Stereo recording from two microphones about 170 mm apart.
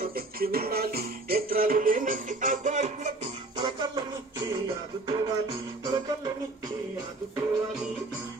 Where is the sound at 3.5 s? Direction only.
25° right (ahead or behind).